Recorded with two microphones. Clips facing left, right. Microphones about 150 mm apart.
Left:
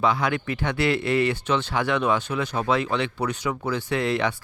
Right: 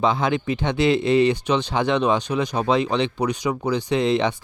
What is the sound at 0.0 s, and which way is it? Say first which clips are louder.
Speech: right 3 dB; 25° right (ahead or behind).